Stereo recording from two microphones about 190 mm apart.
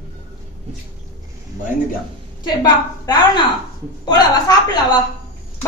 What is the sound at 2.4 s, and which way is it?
A woman's voice, 20° left (ahead or behind).